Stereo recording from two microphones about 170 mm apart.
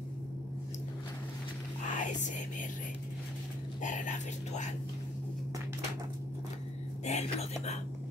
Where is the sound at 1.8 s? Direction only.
45° left (ahead or behind).